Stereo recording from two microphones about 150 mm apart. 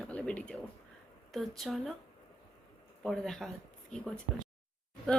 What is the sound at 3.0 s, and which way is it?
Speech, 5° left (ahead or behind).